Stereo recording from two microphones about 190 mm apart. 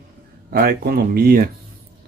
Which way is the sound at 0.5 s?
50° right (ahead or behind).